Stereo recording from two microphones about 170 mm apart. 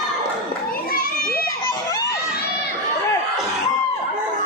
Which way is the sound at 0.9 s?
60° left (ahead or behind).